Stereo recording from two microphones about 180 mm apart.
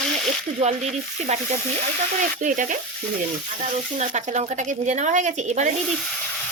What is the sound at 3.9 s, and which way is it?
A woman's voice, 40° right (ahead or behind).